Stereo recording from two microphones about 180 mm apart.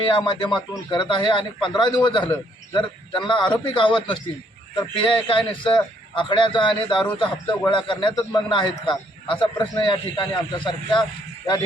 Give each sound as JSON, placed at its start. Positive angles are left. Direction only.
{"t": 0.1, "sound": "a man's voice", "side_deg": 25}